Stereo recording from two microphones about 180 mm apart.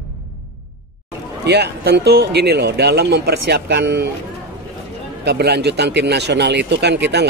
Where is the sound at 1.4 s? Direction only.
65° right (ahead or behind).